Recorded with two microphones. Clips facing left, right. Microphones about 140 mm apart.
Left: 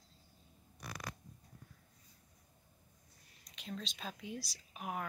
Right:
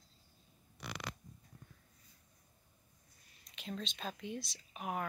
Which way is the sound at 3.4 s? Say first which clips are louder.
Right 2 dB; centre (ahead or behind).